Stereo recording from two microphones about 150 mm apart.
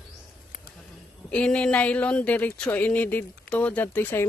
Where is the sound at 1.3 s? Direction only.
5° left (ahead or behind).